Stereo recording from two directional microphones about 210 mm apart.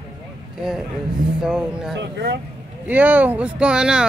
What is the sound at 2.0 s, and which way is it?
Speech, 55° right (ahead or behind).